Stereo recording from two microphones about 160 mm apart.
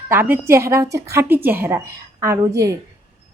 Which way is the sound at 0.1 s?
15° right (ahead or behind).